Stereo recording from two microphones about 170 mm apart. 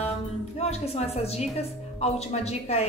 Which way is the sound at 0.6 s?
40° left (ahead or behind).